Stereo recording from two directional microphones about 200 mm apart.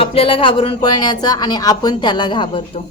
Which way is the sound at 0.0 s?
30° left (ahead or behind).